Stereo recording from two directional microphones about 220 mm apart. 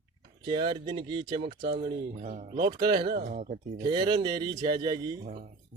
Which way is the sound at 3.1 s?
35° right (ahead or behind).